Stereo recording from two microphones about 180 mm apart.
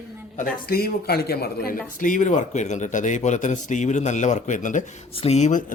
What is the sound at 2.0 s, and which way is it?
Speech, 45° left (ahead or behind).